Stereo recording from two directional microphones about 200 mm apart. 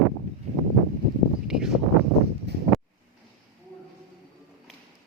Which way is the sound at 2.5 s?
55° right (ahead or behind).